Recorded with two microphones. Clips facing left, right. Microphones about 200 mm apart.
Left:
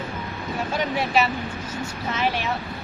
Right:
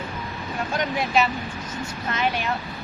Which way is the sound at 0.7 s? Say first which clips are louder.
Even; 5° left (ahead or behind).